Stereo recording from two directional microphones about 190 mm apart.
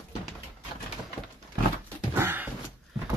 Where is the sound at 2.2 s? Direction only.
10° right (ahead or behind).